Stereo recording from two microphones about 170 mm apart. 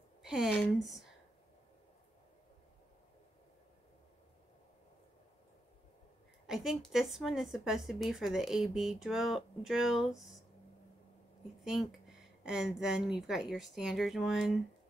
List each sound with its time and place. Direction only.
0.2 s a sound: centre (ahead or behind)
0.5 s a woman's voice: centre (ahead or behind)
6.4 s a woman's voice: centre (ahead or behind)
11.6 s a woman's voice: centre (ahead or behind)